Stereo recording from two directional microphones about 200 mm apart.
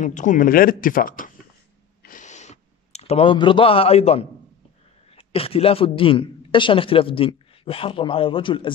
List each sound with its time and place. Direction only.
0.0 s speech: 40° left (ahead or behind)
2.0 s a sound: 40° left (ahead or behind)
5.1 s speech: 30° left (ahead or behind)